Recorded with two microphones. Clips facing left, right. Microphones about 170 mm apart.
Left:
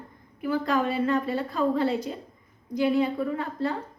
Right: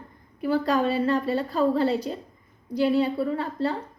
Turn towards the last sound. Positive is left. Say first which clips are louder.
# right 2 dB
turn(degrees=-35)  # may be behind; listen again after turning